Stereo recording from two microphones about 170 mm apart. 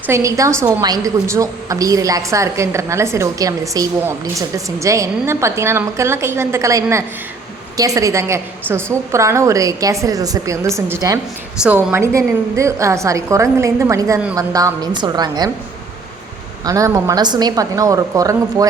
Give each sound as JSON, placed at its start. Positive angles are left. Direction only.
{"t": 0.1, "sound": "a woman's voice", "side_deg": -20}
{"t": 16.6, "sound": "a woman's voice", "side_deg": -20}